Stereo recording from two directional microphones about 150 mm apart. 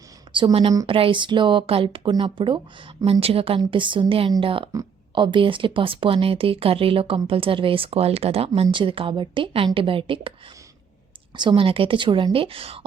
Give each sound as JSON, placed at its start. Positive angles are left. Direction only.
{"t": 0.3, "sound": "a woman's voice", "side_deg": -35}
{"t": 11.3, "sound": "a woman's voice", "side_deg": -35}